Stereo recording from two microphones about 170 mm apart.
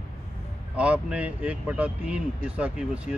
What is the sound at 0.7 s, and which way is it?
Speech, 5° right (ahead or behind).